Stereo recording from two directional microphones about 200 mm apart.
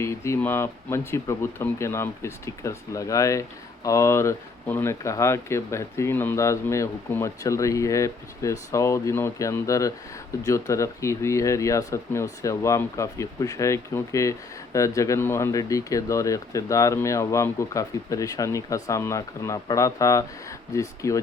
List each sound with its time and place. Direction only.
0.0 s speech: 15° left (ahead or behind)